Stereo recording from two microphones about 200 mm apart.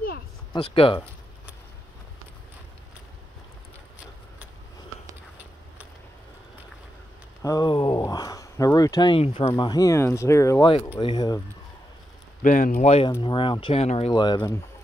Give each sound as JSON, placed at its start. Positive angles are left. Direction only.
{"t": 0.5, "sound": "speech", "side_deg": 25}
{"t": 7.4, "sound": "speech", "side_deg": 20}
{"t": 12.4, "sound": "speech", "side_deg": 40}
{"t": 13.2, "sound": "speech", "side_deg": 25}